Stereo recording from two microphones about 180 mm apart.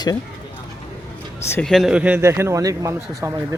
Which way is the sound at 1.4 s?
10° left (ahead or behind).